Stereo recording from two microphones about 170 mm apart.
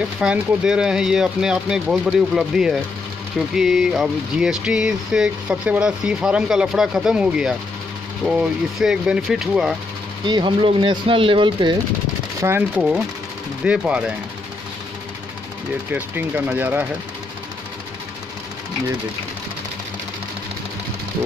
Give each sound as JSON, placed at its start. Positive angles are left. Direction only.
{"t": 0.2, "sound": "speech", "side_deg": -5}
{"t": 10.2, "sound": "speech", "side_deg": -30}
{"t": 12.4, "sound": "speech", "side_deg": -15}
{"t": 15.9, "sound": "speech", "side_deg": -10}